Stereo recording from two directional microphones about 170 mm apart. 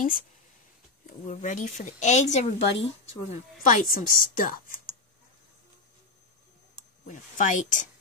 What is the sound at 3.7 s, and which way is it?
A woman's voice, 55° left (ahead or behind).